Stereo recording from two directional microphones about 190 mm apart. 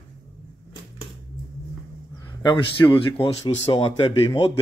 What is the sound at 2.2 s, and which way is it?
A man's voice, 25° left (ahead or behind).